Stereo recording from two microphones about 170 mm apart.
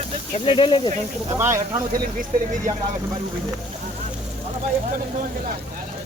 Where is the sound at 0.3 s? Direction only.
30° left (ahead or behind).